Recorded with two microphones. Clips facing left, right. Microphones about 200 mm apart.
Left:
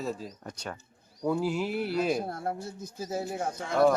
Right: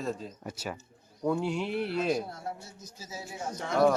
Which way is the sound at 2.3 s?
55° left (ahead or behind).